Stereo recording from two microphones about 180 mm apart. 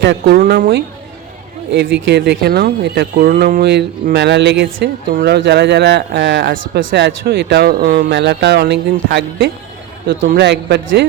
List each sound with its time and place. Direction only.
0.0 s speech: 70° right (ahead or behind)